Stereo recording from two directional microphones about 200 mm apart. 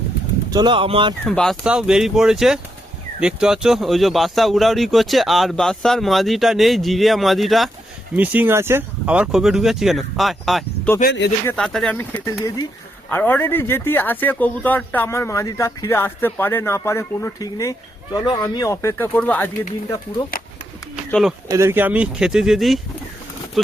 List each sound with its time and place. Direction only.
0.5 s speech: 25° right (ahead or behind)
1.2 s speech: centre (ahead or behind)
11.0 s speech: 60° left (ahead or behind)
11.4 s speech: 5° left (ahead or behind)
21.1 s speech: centre (ahead or behind)
21.4 s speech: 15° right (ahead or behind)